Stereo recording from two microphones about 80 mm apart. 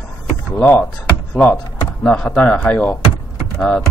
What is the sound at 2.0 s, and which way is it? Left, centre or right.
Speech, centre.